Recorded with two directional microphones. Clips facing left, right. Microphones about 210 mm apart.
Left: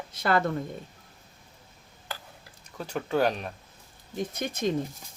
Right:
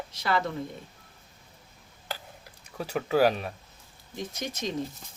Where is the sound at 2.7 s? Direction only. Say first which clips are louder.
Right 2 dB; 5° right (ahead or behind).